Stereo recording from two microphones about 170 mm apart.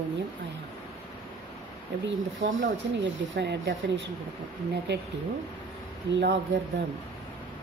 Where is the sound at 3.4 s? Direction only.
90° right.